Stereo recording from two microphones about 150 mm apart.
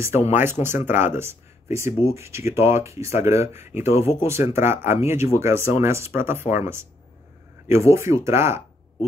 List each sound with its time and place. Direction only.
0.3 s speech: 15° right (ahead or behind)